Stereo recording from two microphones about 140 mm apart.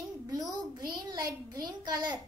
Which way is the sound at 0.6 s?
30° right (ahead or behind).